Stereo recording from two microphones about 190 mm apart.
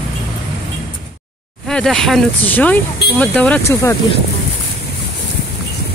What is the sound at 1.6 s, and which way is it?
Speech, 5° left (ahead or behind).